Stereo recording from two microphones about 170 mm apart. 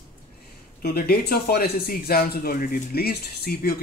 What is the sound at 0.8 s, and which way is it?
Speech, 60° left (ahead or behind).